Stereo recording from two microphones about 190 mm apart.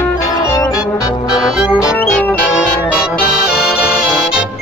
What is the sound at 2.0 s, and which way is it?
Music, 10° left (ahead or behind).